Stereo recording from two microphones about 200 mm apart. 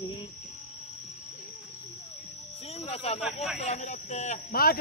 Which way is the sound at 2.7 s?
30° left (ahead or behind).